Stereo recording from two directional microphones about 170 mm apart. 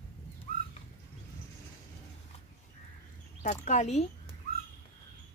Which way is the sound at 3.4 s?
45° left (ahead or behind).